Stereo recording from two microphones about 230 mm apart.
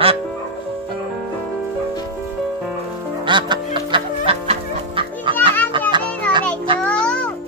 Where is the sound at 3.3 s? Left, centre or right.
Centre.